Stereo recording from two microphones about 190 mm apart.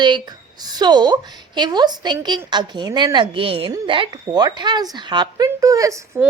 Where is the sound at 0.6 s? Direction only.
20° right (ahead or behind).